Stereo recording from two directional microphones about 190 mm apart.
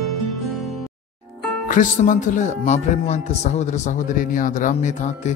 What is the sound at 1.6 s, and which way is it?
Speech, 45° left (ahead or behind).